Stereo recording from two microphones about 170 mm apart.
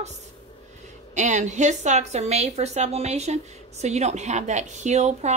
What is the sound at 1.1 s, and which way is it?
A woman's voice, 45° right (ahead or behind).